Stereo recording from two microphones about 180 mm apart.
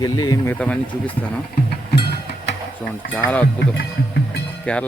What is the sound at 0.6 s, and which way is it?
Speech, 10° left (ahead or behind).